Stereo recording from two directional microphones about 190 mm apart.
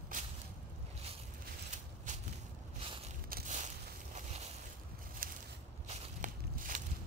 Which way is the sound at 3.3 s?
45° right (ahead or behind).